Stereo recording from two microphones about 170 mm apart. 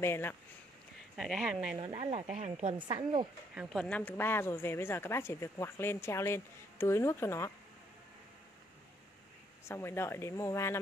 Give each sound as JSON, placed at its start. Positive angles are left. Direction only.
{"t": 0.0, "sound": "a woman's voice", "side_deg": 15}
{"t": 1.1, "sound": "speech", "side_deg": 0}
{"t": 1.8, "sound": "speech", "side_deg": -25}
{"t": 2.3, "sound": "a woman's voice", "side_deg": -40}
{"t": 2.9, "sound": "speech", "side_deg": -25}
{"t": 3.5, "sound": "a woman's voice", "side_deg": 0}
{"t": 9.7, "sound": "a woman's voice", "side_deg": 15}